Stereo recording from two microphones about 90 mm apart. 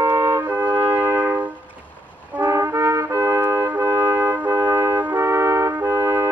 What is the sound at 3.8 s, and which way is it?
Trumpet, 45° right (ahead or behind).